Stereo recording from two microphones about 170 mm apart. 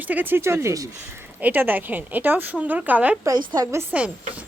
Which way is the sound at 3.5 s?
20° right (ahead or behind).